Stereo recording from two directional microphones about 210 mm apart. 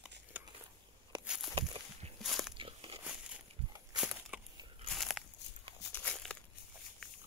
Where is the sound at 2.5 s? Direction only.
25° right (ahead or behind).